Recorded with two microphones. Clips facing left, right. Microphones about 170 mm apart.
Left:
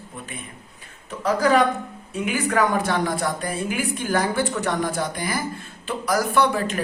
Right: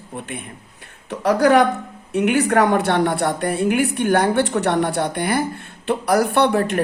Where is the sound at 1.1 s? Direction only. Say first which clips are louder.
Right 4 dB; 70° right (ahead or behind).